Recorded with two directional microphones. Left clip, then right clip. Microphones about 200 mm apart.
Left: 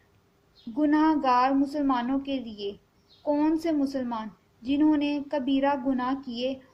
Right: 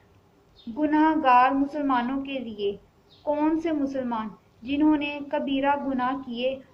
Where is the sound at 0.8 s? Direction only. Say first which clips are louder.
Right 2 dB; 50° left (ahead or behind).